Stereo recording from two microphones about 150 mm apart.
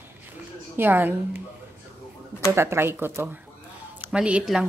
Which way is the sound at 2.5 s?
15° right (ahead or behind).